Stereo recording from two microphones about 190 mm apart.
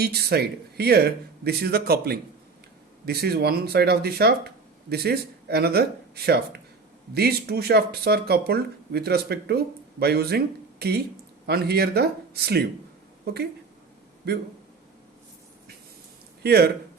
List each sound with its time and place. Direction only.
0.0 s a woman's voice: 55° right (ahead or behind)
16.4 s speech: 55° right (ahead or behind)